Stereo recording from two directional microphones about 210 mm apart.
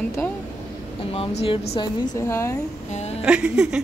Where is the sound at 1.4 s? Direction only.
30° left (ahead or behind).